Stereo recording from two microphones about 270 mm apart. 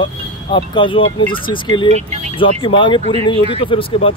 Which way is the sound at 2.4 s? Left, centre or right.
Centre.